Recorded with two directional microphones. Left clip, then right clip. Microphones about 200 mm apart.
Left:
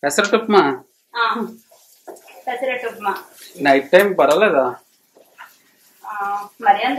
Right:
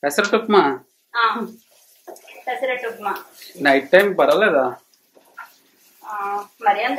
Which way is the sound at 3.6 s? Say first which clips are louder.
Left 1 dB; 5° right (ahead or behind).